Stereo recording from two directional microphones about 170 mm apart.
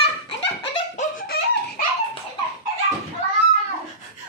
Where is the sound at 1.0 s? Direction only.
60° left (ahead or behind).